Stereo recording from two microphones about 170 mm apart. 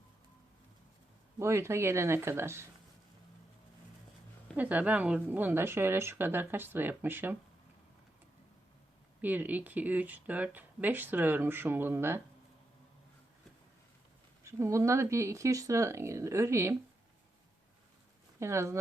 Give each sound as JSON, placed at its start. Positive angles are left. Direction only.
{"t": 1.4, "sound": "speech", "side_deg": -15}
{"t": 4.5, "sound": "speech", "side_deg": -10}
{"t": 9.2, "sound": "speech", "side_deg": -10}
{"t": 14.4, "sound": "speech", "side_deg": -15}
{"t": 18.3, "sound": "speech", "side_deg": -15}